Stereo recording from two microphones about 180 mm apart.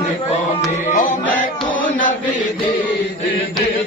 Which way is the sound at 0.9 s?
45° left (ahead or behind).